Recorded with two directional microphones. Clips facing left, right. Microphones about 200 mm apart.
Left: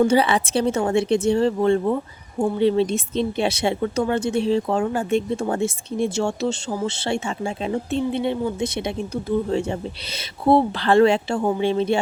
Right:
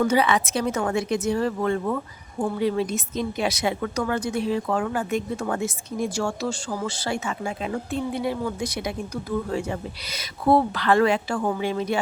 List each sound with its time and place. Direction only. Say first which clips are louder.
0.0 s a woman's voice: left 3 dB; 30° left (ahead or behind)